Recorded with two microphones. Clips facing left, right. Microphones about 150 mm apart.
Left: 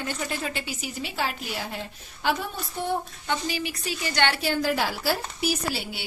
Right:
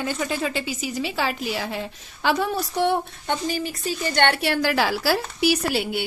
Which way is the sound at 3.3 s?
45° right (ahead or behind).